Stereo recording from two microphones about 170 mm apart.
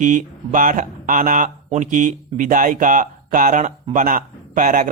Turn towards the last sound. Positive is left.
turn(degrees=-50)  # may be behind; listen again after turning